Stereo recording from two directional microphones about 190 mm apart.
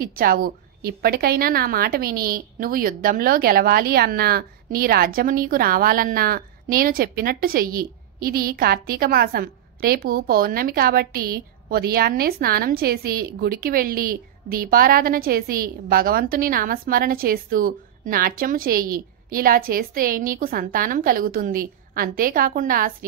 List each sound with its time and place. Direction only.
0.0 s a woman's voice: 50° right (ahead or behind)